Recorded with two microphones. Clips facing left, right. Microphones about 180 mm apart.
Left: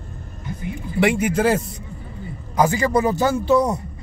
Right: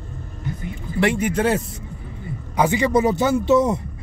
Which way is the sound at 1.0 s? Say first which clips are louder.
Left 1 dB; 10° left (ahead or behind).